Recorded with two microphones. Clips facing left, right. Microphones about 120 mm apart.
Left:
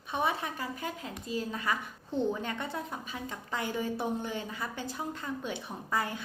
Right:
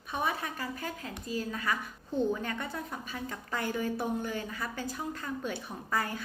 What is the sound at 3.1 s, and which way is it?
A woman's voice, 15° left (ahead or behind).